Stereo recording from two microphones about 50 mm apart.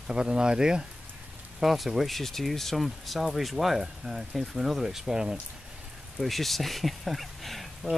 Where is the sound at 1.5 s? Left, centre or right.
Centre.